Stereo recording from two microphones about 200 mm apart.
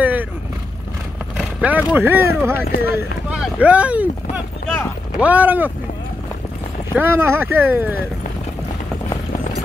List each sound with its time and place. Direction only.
0.0 s vehicle: 10° right (ahead or behind)
1.3 s speech: 5° right (ahead or behind)
2.6 s speech: 50° left (ahead or behind)
3.3 s speech: 5° right (ahead or behind)
5.2 s speech: 10° right (ahead or behind)
6.9 s speech: 10° right (ahead or behind)